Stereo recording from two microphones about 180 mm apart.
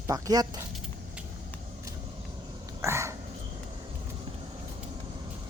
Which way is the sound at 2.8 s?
15° right (ahead or behind).